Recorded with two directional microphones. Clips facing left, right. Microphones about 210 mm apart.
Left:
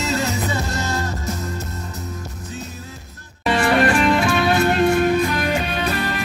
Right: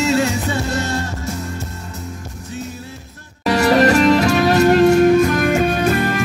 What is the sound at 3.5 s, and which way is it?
Music, 40° right (ahead or behind).